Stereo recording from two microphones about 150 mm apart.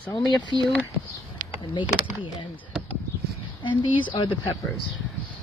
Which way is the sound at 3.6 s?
35° left (ahead or behind).